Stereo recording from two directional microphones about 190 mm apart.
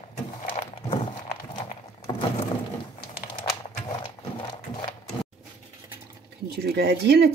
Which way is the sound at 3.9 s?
25° left (ahead or behind).